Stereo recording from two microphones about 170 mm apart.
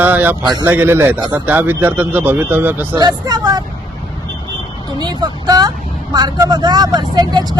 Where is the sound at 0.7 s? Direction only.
10° right (ahead or behind).